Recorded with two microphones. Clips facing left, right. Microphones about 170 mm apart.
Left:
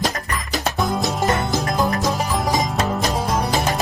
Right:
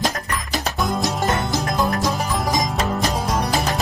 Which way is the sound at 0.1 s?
Centre (ahead or behind).